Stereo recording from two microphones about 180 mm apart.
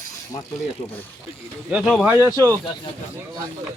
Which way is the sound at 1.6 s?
5° right (ahead or behind).